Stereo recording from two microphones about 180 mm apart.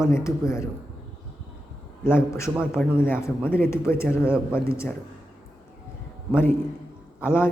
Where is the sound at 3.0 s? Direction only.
15° left (ahead or behind).